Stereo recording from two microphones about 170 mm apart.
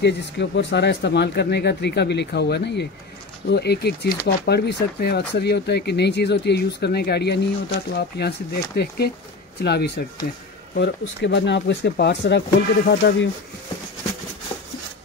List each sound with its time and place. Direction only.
0.0 s speech: 90° left; by 10.0 s 75° left (ahead or behind)
10.8 s speech: 90° left; by 13.3 s 75° left (ahead or behind)